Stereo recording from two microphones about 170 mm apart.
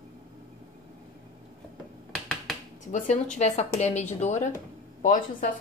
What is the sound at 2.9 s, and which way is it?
A woman's voice, 45° left (ahead or behind).